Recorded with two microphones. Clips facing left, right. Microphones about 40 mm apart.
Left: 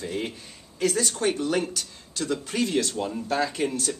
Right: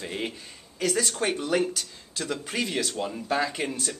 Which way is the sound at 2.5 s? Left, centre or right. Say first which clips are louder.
Left 3 dB; right.